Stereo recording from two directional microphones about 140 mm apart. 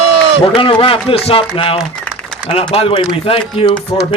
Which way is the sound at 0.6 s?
40° left (ahead or behind).